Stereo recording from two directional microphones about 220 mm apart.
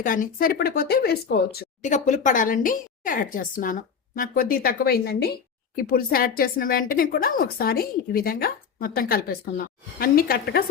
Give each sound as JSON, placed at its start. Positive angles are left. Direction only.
{"t": 0.0, "sound": "a woman's voice", "side_deg": 40}